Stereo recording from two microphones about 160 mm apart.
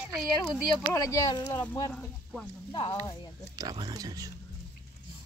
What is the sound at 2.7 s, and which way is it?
Speech, 35° left (ahead or behind).